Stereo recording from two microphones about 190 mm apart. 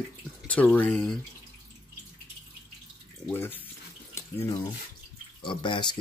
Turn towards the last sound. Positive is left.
turn(degrees=25)  # may be behind; listen again after turning